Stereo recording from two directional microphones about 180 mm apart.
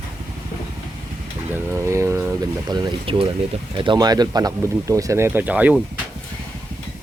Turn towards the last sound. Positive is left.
turn(degrees=-5)  # may be behind; listen again after turning